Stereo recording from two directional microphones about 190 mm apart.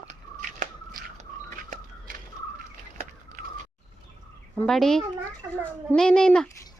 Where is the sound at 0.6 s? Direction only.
40° right (ahead or behind).